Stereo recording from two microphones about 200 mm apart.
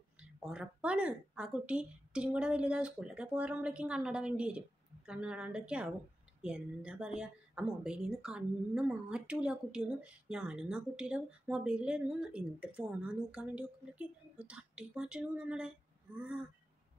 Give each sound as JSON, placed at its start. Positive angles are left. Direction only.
{"t": 0.2, "sound": "a woman's voice", "side_deg": -5}